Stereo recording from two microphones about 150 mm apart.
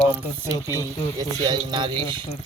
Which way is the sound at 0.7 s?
25° right (ahead or behind).